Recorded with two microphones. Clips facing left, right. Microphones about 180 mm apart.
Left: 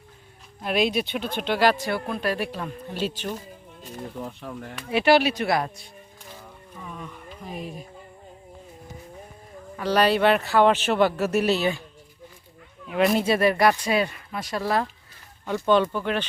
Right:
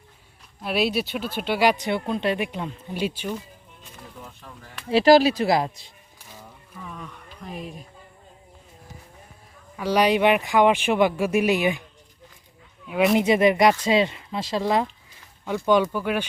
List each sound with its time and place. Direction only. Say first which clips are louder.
0.6 s speech: even; 5° right (ahead or behind)
4.2 s speech: left 9 dB; 65° left (ahead or behind)
4.9 s speech: right 4 dB; 35° right (ahead or behind)
5.5 s speech: right 3 dB; 25° right (ahead or behind)
6.8 s speech: left 1 dB; centre (ahead or behind)
9.7 s speech: right 1 dB; 10° right (ahead or behind)
12.9 s speech: right 1 dB; 5° right (ahead or behind)
13.1 s speech: right 3 dB; 20° right (ahead or behind)